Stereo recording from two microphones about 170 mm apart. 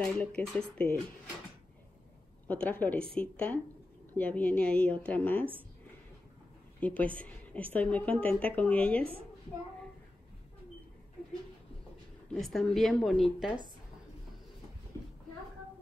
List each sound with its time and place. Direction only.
0.0 s a woman's voice: 5° left (ahead or behind)
2.4 s a woman's voice: 10° left (ahead or behind)
6.8 s a woman's voice: 10° left (ahead or behind)
12.3 s a woman's voice: centre (ahead or behind)